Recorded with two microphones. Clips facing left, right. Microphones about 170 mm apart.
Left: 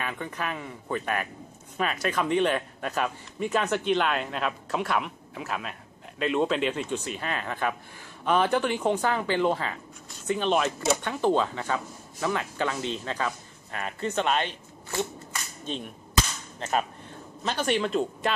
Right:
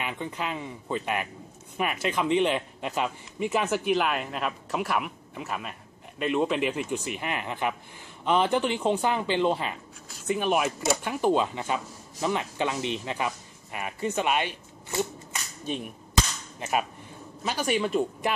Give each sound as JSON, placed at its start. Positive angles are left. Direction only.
{"t": 0.0, "sound": "speech", "side_deg": -15}
{"t": 15.6, "sound": "cap gun", "side_deg": -10}
{"t": 16.5, "sound": "speech", "side_deg": -10}